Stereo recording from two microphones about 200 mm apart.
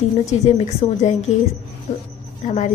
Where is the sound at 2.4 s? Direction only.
35° left (ahead or behind).